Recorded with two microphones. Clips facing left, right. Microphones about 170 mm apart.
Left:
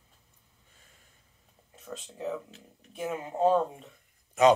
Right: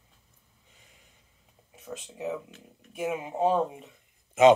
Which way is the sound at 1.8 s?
5° right (ahead or behind).